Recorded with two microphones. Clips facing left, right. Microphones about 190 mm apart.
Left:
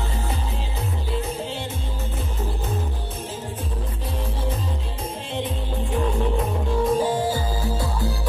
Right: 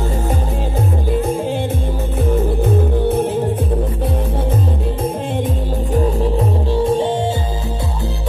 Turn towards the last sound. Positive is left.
turn(degrees=-25)  # may be behind; listen again after turning